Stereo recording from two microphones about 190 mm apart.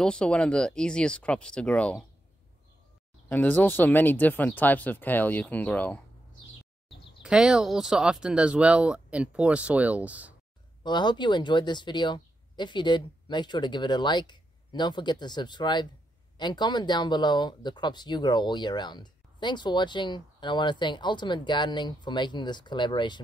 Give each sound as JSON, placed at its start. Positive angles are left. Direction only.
{"t": 0.0, "sound": "speech", "side_deg": 5}
{"t": 3.3, "sound": "speech", "side_deg": 10}
{"t": 7.2, "sound": "speech", "side_deg": -5}
{"t": 10.8, "sound": "speech", "side_deg": 25}